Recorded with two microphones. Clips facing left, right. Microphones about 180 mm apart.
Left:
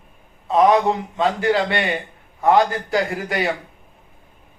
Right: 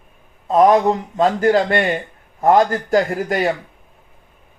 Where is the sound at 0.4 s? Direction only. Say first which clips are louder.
Right 3 dB; 45° right (ahead or behind).